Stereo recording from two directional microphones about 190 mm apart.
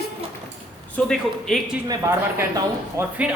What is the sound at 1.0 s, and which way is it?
Speech, 5° left (ahead or behind).